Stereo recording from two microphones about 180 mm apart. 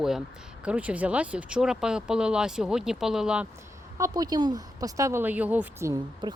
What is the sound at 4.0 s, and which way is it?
Speech, 20° right (ahead or behind).